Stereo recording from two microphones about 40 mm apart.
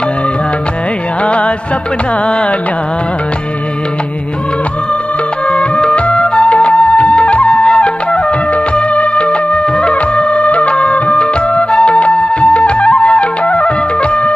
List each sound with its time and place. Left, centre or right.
1.2 s music: left
5.5 s music: left
8.7 s music of bollywood: left
11.7 s music: left